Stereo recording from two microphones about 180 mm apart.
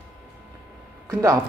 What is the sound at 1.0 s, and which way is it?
Speech, 20° right (ahead or behind).